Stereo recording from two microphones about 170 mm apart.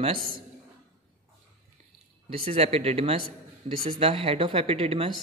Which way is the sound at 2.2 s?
35° right (ahead or behind).